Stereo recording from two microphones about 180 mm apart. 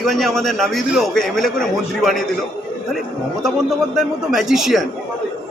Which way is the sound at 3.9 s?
Centre (ahead or behind).